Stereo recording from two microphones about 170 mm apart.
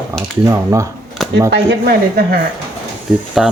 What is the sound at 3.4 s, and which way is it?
Speech, centre (ahead or behind).